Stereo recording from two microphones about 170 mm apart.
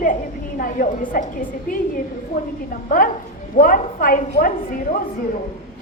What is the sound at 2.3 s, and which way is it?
Speech, 60° left (ahead or behind).